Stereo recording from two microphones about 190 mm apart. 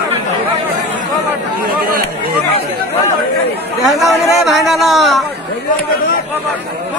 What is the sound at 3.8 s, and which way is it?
Chatter, centre (ahead or behind).